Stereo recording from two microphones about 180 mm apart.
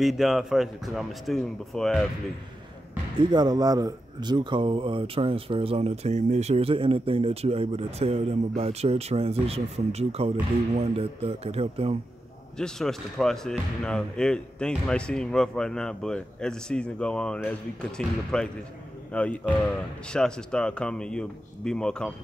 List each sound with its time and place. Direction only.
0.0 s speech: centre (ahead or behind)
3.2 s speech: 25° right (ahead or behind)
12.5 s speech: 5° left (ahead or behind)